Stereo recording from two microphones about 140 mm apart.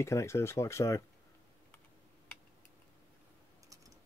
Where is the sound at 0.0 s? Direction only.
20° left (ahead or behind).